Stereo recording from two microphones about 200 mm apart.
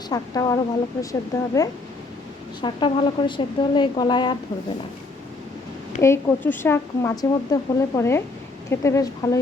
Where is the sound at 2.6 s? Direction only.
25° left (ahead or behind).